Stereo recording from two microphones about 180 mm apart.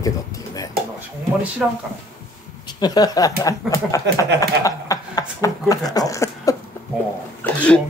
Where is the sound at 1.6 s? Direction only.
5° right (ahead or behind).